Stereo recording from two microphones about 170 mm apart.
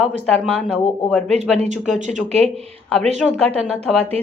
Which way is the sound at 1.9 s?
45° right (ahead or behind).